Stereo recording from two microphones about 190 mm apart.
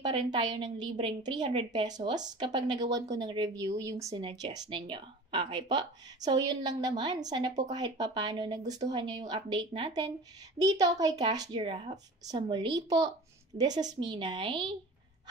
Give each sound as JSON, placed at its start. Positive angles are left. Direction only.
{"t": 0.0, "sound": "a woman's voice", "side_deg": -25}